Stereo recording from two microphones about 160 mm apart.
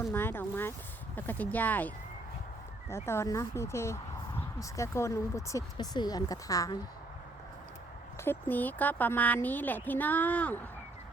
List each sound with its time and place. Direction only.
0.1 s speech: 15° left (ahead or behind)
2.9 s speech: 15° left (ahead or behind)
8.2 s speech: 15° left (ahead or behind)